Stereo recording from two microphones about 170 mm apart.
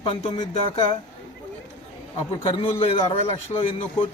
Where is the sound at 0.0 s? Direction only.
35° left (ahead or behind).